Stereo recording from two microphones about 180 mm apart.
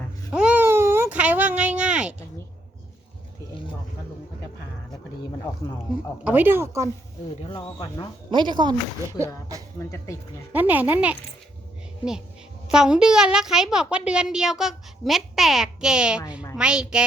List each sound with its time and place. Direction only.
0.3 s baby cry: 5° right (ahead or behind)
6.2 s speech: 10° right (ahead or behind)
7.4 s speech: 25° left (ahead or behind)
8.3 s speech: 25° right (ahead or behind)
10.5 s speech: 10° right (ahead or behind)
12.7 s a woman's voice: 5° right (ahead or behind)